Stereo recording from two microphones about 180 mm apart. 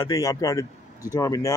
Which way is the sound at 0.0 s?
20° left (ahead or behind).